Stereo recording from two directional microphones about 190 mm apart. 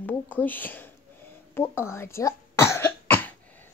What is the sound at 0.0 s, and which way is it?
Speech, 10° left (ahead or behind).